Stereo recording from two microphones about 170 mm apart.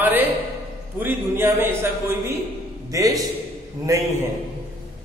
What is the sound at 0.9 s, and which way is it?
A man's voice, 10° right (ahead or behind).